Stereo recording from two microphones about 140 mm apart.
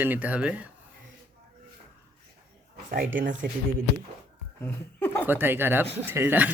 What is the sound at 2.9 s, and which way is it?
Speech, 80° right.